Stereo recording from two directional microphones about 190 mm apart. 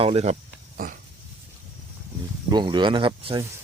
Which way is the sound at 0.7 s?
45° right (ahead or behind).